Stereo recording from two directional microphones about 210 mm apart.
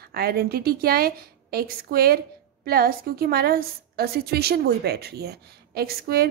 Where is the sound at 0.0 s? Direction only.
50° right (ahead or behind).